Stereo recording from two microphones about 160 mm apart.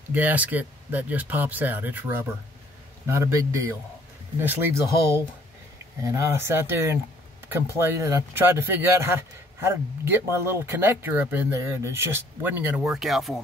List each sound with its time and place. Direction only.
0.1 s speech: 10° right (ahead or behind)